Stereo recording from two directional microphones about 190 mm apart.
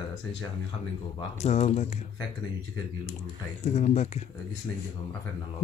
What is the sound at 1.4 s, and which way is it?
Speech, 35° left (ahead or behind).